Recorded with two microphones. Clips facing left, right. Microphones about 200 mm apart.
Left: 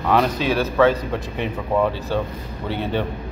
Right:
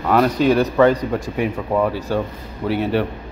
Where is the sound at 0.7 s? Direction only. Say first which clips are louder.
Right 2 dB; 10° right (ahead or behind).